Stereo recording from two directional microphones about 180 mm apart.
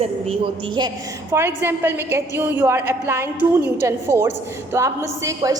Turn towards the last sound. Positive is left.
turn(degrees=-20)  # may be behind; listen again after turning